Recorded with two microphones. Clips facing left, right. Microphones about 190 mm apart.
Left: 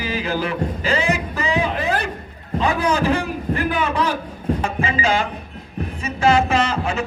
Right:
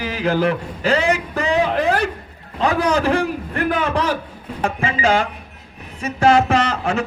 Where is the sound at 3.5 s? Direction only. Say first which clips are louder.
Right 2 dB; 60° right (ahead or behind).